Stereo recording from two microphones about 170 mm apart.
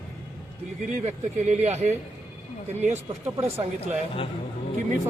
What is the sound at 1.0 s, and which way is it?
Speech, 40° right (ahead or behind).